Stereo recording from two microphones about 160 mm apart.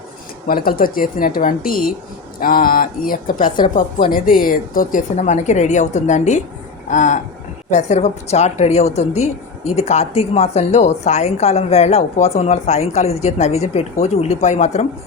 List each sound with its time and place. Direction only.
0.4 s a woman's voice: 65° left (ahead or behind); by 14.8 s 45° left (ahead or behind)